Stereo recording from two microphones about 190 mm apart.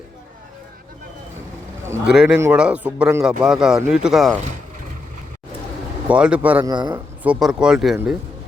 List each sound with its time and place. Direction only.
1.8 s a sound: 10° right (ahead or behind)
2.1 s a man's voice: 5° right (ahead or behind)
6.1 s a man's voice: 5° right (ahead or behind)
6.7 s a man's voice: 20° right (ahead or behind)
7.2 s speech: 5° right (ahead or behind)